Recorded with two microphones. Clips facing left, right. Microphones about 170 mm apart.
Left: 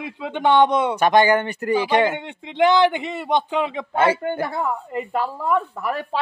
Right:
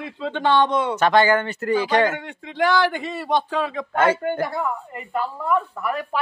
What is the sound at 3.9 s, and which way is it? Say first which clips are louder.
Speech: even; 10° left (ahead or behind).